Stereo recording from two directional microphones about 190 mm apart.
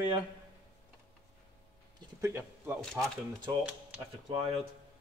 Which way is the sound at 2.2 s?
10° right (ahead or behind).